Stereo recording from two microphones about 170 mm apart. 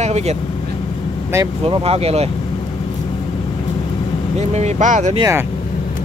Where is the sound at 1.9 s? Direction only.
35° right (ahead or behind).